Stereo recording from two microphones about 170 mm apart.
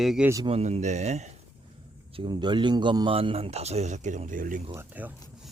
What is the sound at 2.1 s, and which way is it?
Speech, 30° right (ahead or behind).